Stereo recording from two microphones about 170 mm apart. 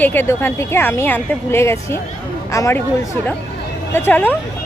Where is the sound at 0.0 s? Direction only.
10° left (ahead or behind).